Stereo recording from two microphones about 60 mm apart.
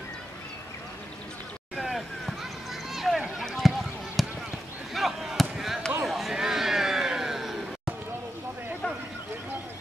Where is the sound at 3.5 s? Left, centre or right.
Centre.